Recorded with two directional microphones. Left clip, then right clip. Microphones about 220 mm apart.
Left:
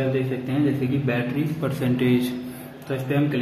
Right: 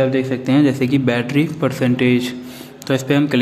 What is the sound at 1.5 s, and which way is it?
Speech, 35° right (ahead or behind).